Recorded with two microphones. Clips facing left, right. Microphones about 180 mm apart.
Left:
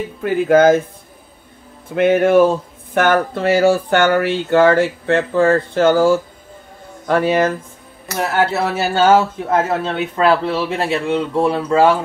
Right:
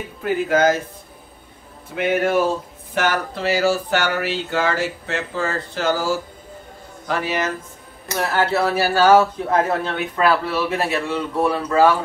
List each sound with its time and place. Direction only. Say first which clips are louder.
0.2 s speech: left 6 dB; 55° left (ahead or behind)
2.0 s speech: left 7 dB; 50° left (ahead or behind)
8.2 s speech: left 2 dB; 20° left (ahead or behind)